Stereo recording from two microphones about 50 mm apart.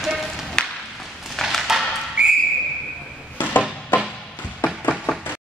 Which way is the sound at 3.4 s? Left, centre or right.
Left.